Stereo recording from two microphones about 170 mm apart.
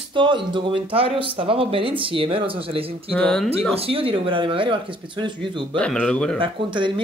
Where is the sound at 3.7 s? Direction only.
35° right (ahead or behind).